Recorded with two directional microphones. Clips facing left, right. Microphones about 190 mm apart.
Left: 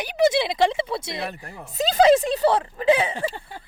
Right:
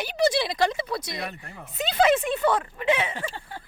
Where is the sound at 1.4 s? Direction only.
40° left (ahead or behind).